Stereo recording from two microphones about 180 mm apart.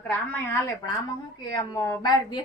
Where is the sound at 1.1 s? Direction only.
20° left (ahead or behind).